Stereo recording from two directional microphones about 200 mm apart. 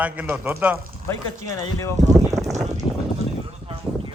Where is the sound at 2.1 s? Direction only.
15° right (ahead or behind).